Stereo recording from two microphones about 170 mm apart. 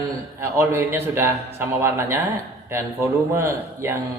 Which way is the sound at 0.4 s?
15° right (ahead or behind).